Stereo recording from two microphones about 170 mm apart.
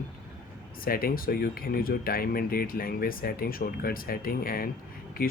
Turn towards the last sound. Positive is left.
turn(degrees=60)  # may be behind; listen again after turning